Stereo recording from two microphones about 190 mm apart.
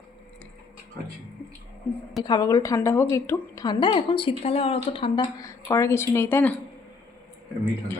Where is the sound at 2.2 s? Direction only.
20° left (ahead or behind).